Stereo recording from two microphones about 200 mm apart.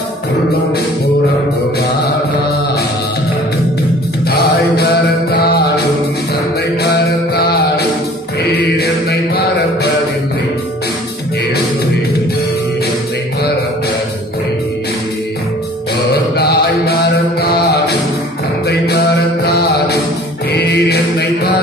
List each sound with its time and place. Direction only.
4.3 s mantra: 55° left (ahead or behind)
6.8 s music: 50° left (ahead or behind)
8.4 s mantra: 50° left (ahead or behind)
16.3 s music: 55° left (ahead or behind)